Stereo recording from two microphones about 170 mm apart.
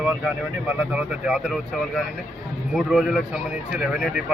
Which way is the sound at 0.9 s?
5° right (ahead or behind).